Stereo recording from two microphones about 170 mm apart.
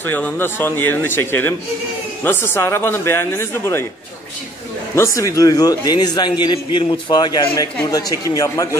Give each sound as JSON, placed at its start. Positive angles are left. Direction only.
{"t": 0.0, "sound": "speech", "side_deg": 10}
{"t": 4.9, "sound": "a man's voice", "side_deg": 15}